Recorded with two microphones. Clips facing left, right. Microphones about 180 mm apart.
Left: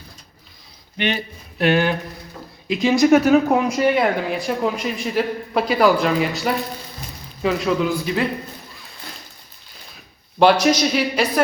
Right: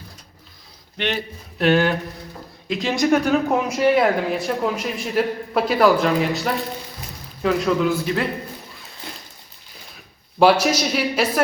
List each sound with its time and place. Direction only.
0.9 s speech: centre (ahead or behind)
10.4 s speech: 5° right (ahead or behind)